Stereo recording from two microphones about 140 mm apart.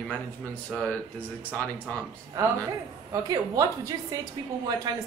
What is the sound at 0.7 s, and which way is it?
Speech, 10° left (ahead or behind).